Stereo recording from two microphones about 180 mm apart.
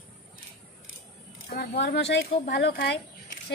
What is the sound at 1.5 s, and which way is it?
A woman's voice, 65° left (ahead or behind).